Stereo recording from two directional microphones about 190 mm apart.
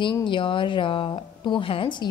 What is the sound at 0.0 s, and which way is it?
Speech, 25° left (ahead or behind).